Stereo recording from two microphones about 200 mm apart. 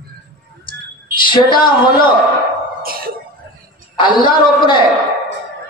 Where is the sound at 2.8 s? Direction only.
45° right (ahead or behind).